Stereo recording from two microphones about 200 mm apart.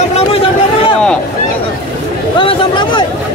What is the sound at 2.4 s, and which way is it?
Speech, 25° left (ahead or behind).